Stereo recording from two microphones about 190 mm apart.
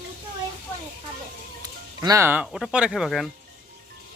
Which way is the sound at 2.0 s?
15° right (ahead or behind).